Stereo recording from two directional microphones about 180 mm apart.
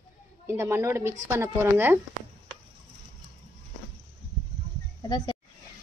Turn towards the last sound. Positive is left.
turn(degrees=25)  # may be behind; listen again after turning